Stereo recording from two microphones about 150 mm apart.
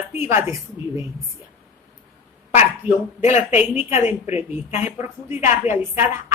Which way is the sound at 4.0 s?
50° left (ahead or behind).